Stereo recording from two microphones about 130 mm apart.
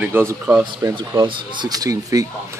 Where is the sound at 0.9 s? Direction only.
40° right (ahead or behind).